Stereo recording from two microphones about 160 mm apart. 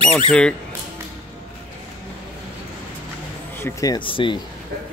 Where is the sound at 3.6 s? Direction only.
15° left (ahead or behind).